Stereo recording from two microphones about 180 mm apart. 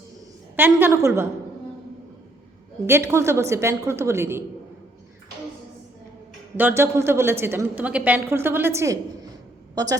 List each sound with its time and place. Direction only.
0.5 s a woman's voice: 10° right (ahead or behind)
2.8 s a woman's voice: 15° right (ahead or behind)
6.6 s a woman's voice: 10° right (ahead or behind)